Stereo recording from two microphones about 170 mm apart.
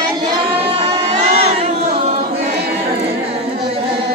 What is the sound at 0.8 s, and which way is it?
Crowd, 40° right (ahead or behind).